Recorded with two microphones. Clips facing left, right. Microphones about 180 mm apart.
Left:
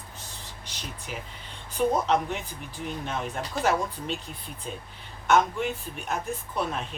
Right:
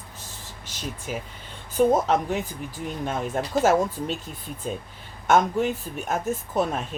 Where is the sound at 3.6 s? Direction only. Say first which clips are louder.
Right 5 dB; 45° right (ahead or behind).